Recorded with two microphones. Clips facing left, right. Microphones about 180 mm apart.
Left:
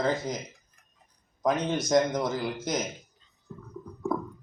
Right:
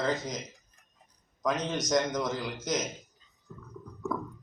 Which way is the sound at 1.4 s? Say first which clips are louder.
Left 4 dB; 30° left (ahead or behind).